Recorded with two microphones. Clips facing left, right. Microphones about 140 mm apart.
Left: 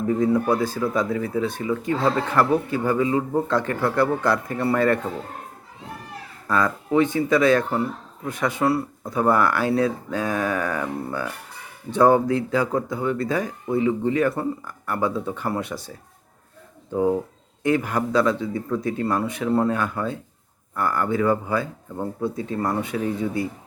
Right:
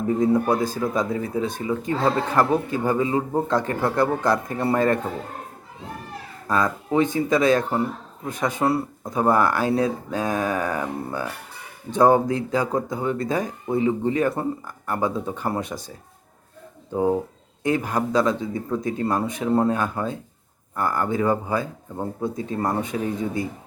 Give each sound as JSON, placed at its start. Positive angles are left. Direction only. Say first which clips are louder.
{"t": 0.1, "sound": "speech", "louder": "right 1 dB", "side_deg": -20}
{"t": 3.4, "sound": "speech", "louder": "even", "side_deg": -15}
{"t": 6.5, "sound": "speech", "louder": "left 1 dB", "side_deg": -20}
{"t": 16.9, "sound": "speech", "louder": "even", "side_deg": -15}